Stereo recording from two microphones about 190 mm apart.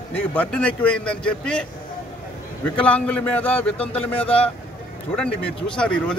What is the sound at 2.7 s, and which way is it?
A man's voice, 10° left (ahead or behind).